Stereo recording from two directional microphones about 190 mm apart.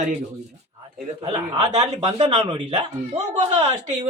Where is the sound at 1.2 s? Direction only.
35° right (ahead or behind).